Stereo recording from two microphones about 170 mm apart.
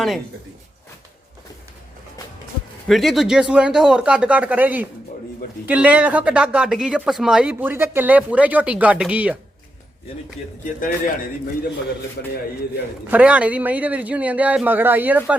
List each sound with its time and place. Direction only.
2.8 s speech: centre (ahead or behind)
10.8 s a man's voice: 55° left (ahead or behind)
13.1 s speech: 10° right (ahead or behind)